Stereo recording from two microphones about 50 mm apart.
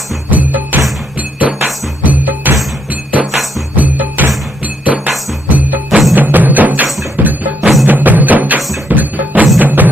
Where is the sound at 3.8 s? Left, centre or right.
Right.